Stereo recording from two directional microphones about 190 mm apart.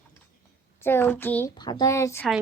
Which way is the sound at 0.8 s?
10° left (ahead or behind).